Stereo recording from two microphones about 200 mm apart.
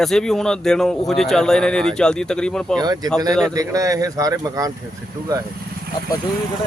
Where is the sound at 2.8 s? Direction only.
20° right (ahead or behind).